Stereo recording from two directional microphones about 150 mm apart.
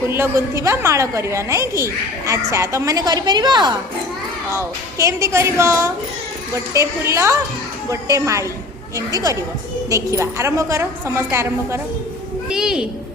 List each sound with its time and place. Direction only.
0.1 s a woman's voice: 15° right (ahead or behind)
4.5 s a woman's voice: 20° right (ahead or behind)
12.5 s a woman's voice: 5° right (ahead or behind)